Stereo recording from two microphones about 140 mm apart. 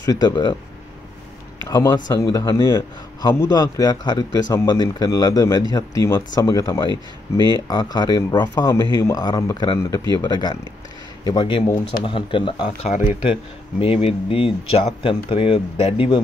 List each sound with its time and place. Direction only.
0.0 s speech: 25° left (ahead or behind)
1.7 s speech: 25° left (ahead or behind)
12.9 s speech: 60° left (ahead or behind)
13.3 s speech: 40° left (ahead or behind)